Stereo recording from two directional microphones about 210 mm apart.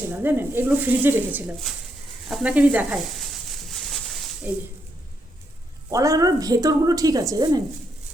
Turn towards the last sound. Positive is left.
turn(degrees=-15)  # may be behind; listen again after turning